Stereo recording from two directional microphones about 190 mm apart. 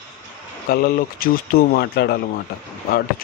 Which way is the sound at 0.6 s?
50° left (ahead or behind).